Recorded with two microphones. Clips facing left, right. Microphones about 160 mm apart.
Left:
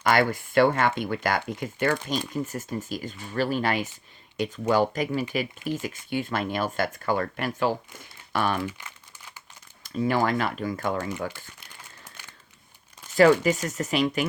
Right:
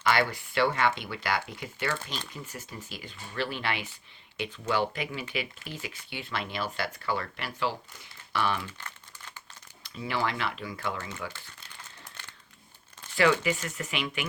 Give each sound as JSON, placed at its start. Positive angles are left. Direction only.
{"t": 0.0, "sound": "speech", "side_deg": 45}
{"t": 8.8, "sound": "crumpling", "side_deg": 10}
{"t": 9.8, "sound": "speech", "side_deg": 45}
{"t": 13.1, "sound": "speech", "side_deg": 40}